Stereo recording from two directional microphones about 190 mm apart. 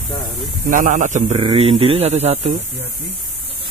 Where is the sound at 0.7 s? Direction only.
45° right (ahead or behind).